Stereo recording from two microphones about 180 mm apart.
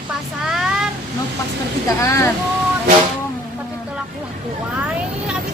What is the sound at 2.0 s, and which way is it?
Speech, 15° left (ahead or behind).